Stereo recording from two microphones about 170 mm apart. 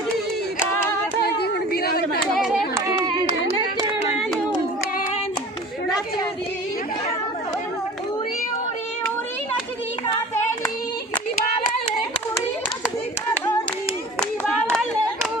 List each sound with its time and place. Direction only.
1.4 s a sound: 60° left (ahead or behind)
2.8 s clapping: 20° right (ahead or behind)
14.2 s hands: centre (ahead or behind)